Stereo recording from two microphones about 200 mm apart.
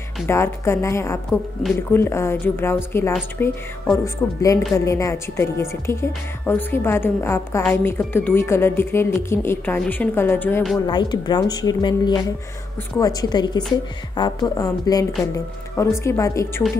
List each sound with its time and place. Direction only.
0.3 s a woman's voice: 15° left (ahead or behind)
10.9 s a woman's voice: 20° left (ahead or behind)